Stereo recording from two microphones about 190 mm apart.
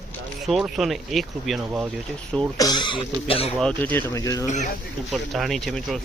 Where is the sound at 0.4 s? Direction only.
Centre (ahead or behind).